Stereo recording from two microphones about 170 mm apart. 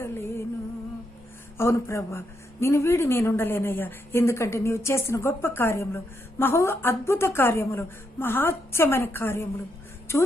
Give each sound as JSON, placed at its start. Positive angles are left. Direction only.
{"t": 0.0, "sound": "music", "side_deg": 15}
{"t": 1.5, "sound": "speech", "side_deg": 15}